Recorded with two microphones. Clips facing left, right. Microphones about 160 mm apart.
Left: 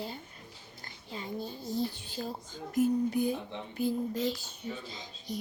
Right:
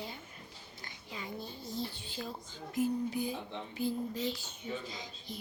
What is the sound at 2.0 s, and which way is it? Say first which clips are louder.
Speech: left 4 dB; 40° left (ahead or behind).